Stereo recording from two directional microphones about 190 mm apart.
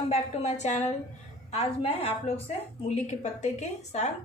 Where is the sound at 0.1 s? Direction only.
35° left (ahead or behind).